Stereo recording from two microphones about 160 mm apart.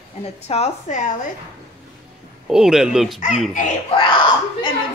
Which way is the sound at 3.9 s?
30° left (ahead or behind).